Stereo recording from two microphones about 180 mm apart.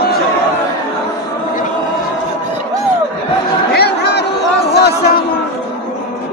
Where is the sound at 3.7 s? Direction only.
65° left (ahead or behind).